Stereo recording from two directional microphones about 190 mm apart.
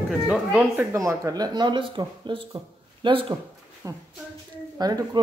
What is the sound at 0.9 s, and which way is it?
Speech, 15° right (ahead or behind).